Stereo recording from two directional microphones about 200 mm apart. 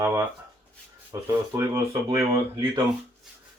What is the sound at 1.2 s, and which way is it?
Speech, 15° right (ahead or behind).